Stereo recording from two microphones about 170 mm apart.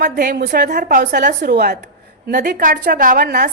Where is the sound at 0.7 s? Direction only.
55° right (ahead or behind).